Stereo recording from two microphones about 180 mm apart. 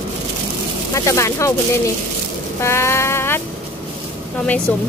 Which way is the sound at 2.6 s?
15° left (ahead or behind).